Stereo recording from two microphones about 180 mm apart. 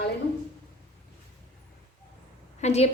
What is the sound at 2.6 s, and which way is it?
Speech, 35° left (ahead or behind).